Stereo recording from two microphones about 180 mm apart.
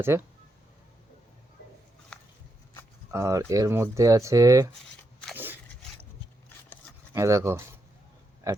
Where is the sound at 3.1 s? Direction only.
15° right (ahead or behind).